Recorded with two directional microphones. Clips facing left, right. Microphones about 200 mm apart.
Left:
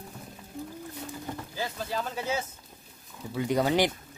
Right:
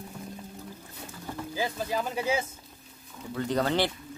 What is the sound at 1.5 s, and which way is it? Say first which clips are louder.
Speech: right 4 dB; 15° right (ahead or behind).